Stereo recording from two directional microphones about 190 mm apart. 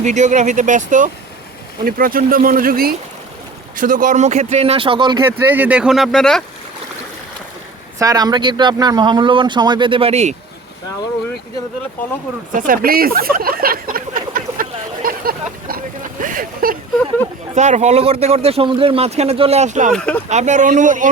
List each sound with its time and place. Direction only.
0.0 s speech: 40° right (ahead or behind)
5.2 s speech: 10° right (ahead or behind)
7.9 s speech: 20° right (ahead or behind); by 10.3 s 35° right (ahead or behind)
12.5 s a sound: 45° right (ahead or behind)
17.5 s speech: 40° right (ahead or behind)
19.9 s speech: 5° left (ahead or behind)
20.2 s speech: 40° right (ahead or behind)